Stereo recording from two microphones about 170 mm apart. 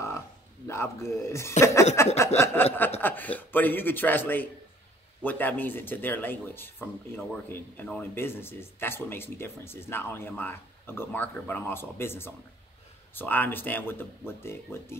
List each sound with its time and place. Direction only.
0.7 s speech: 15° left (ahead or behind)